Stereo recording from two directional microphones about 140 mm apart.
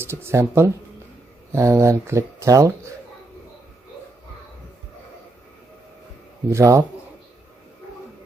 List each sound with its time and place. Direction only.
0.0 s speech: 20° right (ahead or behind)
6.5 s speech: 20° right (ahead or behind)